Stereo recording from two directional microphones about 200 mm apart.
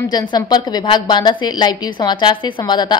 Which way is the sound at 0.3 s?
20° left (ahead or behind).